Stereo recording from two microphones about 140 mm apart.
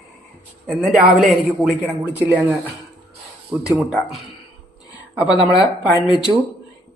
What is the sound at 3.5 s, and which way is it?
Speech, 15° right (ahead or behind).